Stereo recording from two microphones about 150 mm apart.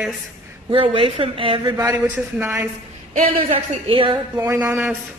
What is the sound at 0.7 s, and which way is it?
Speech, 35° right (ahead or behind).